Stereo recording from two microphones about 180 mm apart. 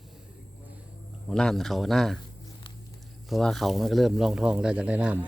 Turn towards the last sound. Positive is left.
turn(degrees=-10)  # may be behind; listen again after turning